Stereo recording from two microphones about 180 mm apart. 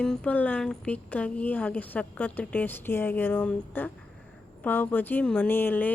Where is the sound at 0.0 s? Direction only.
5° left (ahead or behind).